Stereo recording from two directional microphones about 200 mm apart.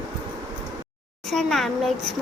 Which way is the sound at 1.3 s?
Centre (ahead or behind).